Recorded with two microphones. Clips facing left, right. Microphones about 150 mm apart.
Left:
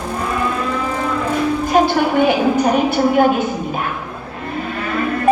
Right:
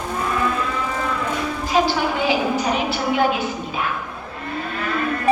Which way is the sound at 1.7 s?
55° left (ahead or behind).